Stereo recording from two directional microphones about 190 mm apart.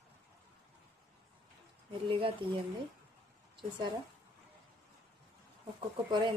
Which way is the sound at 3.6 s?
25° right (ahead or behind).